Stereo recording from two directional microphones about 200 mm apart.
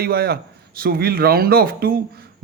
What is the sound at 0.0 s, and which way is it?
Speech, 50° right (ahead or behind).